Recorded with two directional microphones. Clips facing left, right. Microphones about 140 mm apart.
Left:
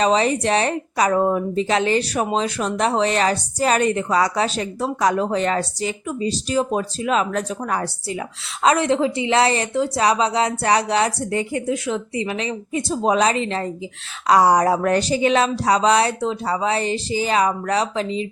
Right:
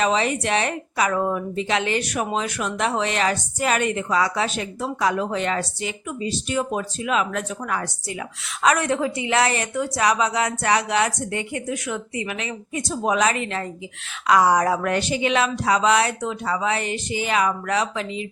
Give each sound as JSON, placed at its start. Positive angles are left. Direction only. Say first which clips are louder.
{"t": 0.0, "sound": "a woman's voice", "louder": "left 4 dB", "side_deg": 35}